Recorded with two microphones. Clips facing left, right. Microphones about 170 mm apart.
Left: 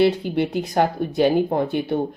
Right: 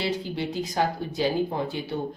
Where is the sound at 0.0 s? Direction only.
60° left (ahead or behind).